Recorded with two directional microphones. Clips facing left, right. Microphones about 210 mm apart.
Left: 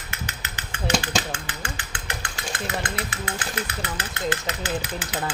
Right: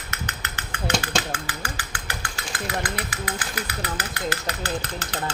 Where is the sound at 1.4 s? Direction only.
25° left (ahead or behind).